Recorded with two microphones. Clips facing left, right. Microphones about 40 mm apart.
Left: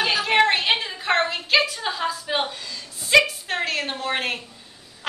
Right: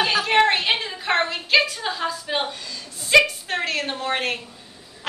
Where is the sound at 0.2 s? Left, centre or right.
Centre.